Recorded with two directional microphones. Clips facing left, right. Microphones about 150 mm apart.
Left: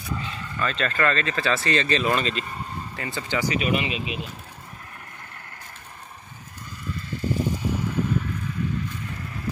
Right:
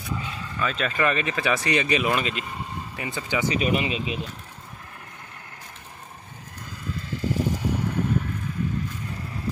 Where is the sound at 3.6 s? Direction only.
35° right (ahead or behind).